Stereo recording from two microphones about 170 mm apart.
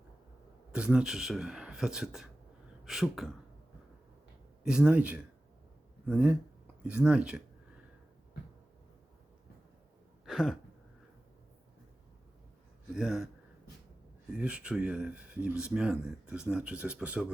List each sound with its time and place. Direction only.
0.7 s speech: 5° right (ahead or behind)
4.6 s speech: 5° right (ahead or behind)
10.2 s a sound: centre (ahead or behind)
12.9 s speech: centre (ahead or behind)
14.3 s speech: 5° right (ahead or behind)